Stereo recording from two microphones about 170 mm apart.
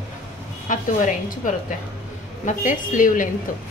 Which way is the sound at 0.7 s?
50° left (ahead or behind).